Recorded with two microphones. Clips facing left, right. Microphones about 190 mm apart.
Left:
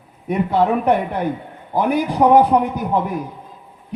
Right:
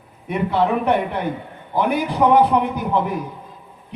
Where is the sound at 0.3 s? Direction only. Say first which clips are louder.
Left 2 dB; 40° left (ahead or behind).